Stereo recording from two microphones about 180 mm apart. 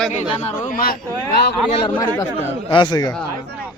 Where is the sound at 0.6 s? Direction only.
50° left (ahead or behind).